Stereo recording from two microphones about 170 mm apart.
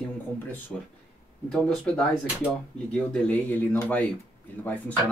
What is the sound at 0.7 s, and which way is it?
Speech, 5° left (ahead or behind).